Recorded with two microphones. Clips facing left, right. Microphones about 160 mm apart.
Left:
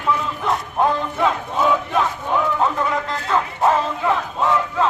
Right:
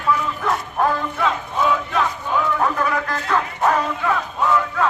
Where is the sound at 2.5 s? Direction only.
20° left (ahead or behind).